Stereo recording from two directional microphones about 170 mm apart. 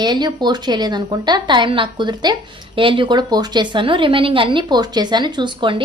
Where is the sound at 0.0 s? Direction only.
25° right (ahead or behind).